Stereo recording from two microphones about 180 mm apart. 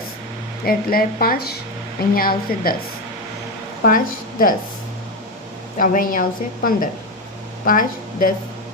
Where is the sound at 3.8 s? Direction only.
50° left (ahead or behind).